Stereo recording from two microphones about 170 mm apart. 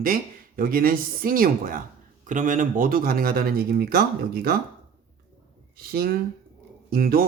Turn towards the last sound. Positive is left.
turn(degrees=-60)  # may be behind; listen again after turning